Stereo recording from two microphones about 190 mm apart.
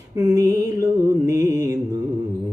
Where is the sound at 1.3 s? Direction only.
15° right (ahead or behind).